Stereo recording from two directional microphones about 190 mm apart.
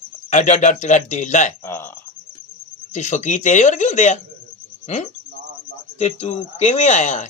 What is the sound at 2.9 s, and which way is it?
Speech, 40° left (ahead or behind).